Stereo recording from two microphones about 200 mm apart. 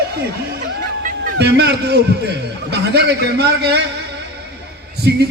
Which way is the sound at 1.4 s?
55° right (ahead or behind).